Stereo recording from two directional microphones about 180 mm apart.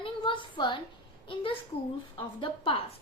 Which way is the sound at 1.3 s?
30° left (ahead or behind).